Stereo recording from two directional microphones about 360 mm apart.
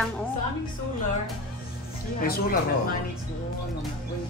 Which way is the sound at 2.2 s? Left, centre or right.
Left.